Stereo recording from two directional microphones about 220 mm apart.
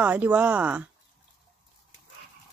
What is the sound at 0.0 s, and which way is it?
Speech, 5° right (ahead or behind).